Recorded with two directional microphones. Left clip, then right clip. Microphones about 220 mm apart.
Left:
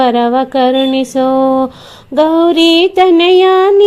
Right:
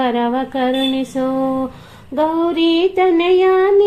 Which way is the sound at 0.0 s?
35° left (ahead or behind).